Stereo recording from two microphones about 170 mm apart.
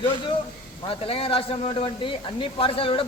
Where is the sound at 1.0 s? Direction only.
35° left (ahead or behind).